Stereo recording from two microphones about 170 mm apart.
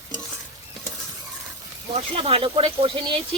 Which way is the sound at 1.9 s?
35° right (ahead or behind).